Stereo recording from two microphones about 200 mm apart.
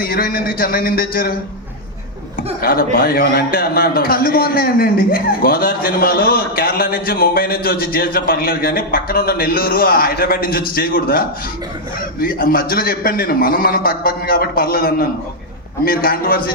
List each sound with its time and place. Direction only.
0.0 s a man's voice: 50° left (ahead or behind)
2.6 s a man's voice: 45° left (ahead or behind)
12.2 s a man's voice: 45° left (ahead or behind)